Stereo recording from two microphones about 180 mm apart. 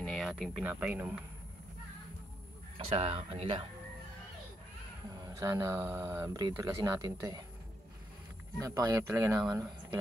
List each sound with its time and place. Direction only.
0.0 s speech: centre (ahead or behind)
2.9 s speech: 35° right (ahead or behind)
5.2 s speech: 20° right (ahead or behind)
8.5 s speech: 20° right (ahead or behind)